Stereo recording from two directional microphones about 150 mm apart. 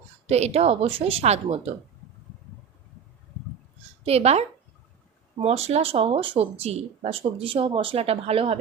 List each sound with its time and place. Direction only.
0.3 s a woman's voice: 45° right (ahead or behind)
4.0 s a woman's voice: 45° right (ahead or behind)